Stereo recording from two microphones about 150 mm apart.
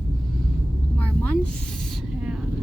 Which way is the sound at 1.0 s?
10° left (ahead or behind).